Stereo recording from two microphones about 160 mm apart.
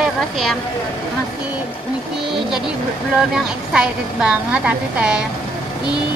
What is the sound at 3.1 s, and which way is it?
A woman's voice, 5° right (ahead or behind).